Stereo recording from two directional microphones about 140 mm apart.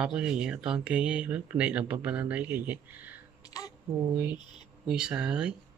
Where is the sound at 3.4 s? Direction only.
25° left (ahead or behind).